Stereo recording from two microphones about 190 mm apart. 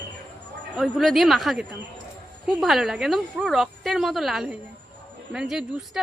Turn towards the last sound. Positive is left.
turn(degrees=0)  # may be behind; listen again after turning